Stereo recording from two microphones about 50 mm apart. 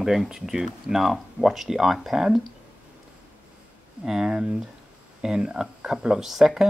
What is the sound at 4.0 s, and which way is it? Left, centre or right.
Speech, centre.